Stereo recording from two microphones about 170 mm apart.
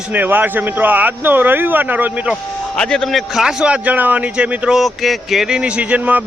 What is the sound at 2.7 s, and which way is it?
A man's voice, 5° left (ahead or behind).